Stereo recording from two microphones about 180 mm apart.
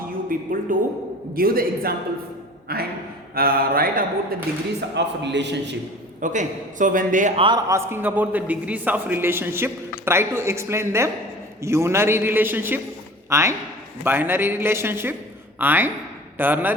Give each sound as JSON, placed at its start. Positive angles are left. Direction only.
{"t": 0.3, "sound": "a man's voice", "side_deg": -50}
{"t": 4.9, "sound": "a man's voice", "side_deg": -75}
{"t": 6.2, "sound": "a man's voice", "side_deg": -45}
{"t": 7.3, "sound": "a man's voice", "side_deg": -25}
{"t": 7.7, "sound": "a man's voice", "side_deg": -15}